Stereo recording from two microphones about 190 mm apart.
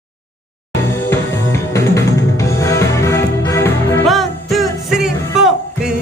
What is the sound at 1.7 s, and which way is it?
Music, 15° left (ahead or behind).